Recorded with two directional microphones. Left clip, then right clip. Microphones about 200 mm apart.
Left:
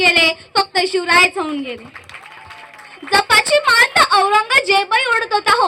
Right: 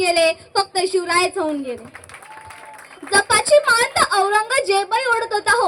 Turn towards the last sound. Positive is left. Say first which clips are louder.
# left 3 dB
turn(degrees=20)  # may be behind; listen again after turning